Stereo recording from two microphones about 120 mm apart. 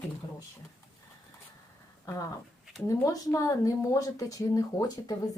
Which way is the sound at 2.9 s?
30° left (ahead or behind).